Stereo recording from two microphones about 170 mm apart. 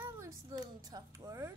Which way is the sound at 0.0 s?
20° right (ahead or behind).